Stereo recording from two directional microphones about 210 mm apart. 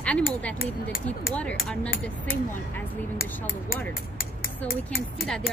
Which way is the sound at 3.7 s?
45° left (ahead or behind).